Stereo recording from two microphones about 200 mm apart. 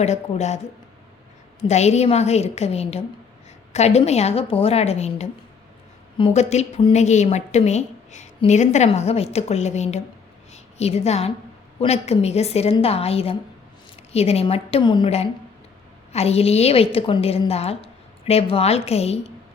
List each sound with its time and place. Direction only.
0.0 s a woman's voice: 35° left (ahead or behind)
1.6 s a woman's voice: 35° left (ahead or behind)